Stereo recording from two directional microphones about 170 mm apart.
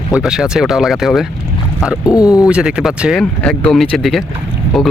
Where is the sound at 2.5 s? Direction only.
5° right (ahead or behind).